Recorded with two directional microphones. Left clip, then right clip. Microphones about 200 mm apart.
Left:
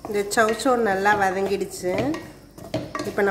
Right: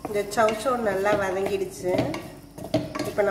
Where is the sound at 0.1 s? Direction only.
45° left (ahead or behind).